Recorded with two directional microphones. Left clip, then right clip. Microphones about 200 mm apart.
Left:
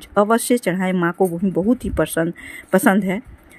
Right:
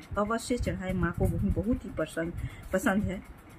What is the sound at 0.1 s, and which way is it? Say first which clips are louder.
A woman's voice: left 14 dB; 45° left (ahead or behind).